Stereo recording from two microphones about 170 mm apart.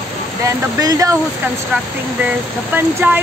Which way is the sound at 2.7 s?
10° right (ahead or behind).